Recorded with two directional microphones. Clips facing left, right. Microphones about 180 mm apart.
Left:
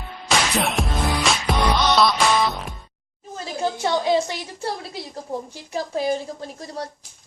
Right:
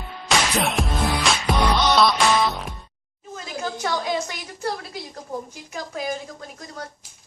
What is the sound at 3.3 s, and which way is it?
A woman's voice, 30° left (ahead or behind).